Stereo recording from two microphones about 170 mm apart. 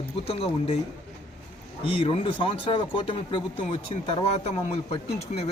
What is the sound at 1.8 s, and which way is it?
Speech, 30° left (ahead or behind).